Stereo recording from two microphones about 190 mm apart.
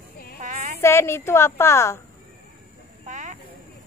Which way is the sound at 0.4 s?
40° right (ahead or behind).